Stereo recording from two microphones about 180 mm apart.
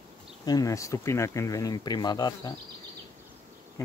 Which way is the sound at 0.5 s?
20° left (ahead or behind).